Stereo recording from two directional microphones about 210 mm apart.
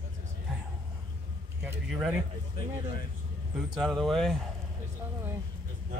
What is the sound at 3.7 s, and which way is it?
Speech, centre (ahead or behind).